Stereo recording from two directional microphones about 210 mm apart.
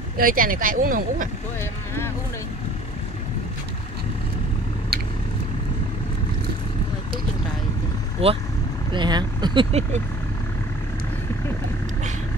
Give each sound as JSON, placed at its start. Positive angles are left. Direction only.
{"t": 0.2, "sound": "speech", "side_deg": -40}
{"t": 1.6, "sound": "vehicle", "side_deg": 10}
{"t": 8.2, "sound": "speech", "side_deg": -30}